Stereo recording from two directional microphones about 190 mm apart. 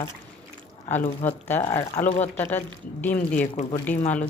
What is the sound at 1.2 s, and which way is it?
Speech, 10° left (ahead or behind).